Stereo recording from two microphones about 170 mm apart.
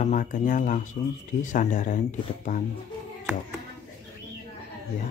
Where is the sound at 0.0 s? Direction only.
50° left (ahead or behind).